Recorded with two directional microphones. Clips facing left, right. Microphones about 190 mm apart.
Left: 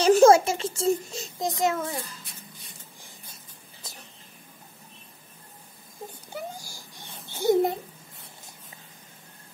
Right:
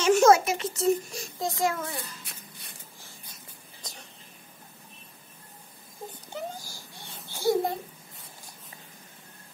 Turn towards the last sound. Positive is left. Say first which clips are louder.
# left 4 dB
turn(degrees=20)  # may be behind; listen again after turning